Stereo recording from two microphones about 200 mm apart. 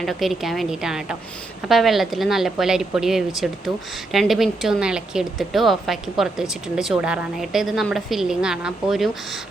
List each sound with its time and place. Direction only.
0.0 s a woman's voice: centre (ahead or behind)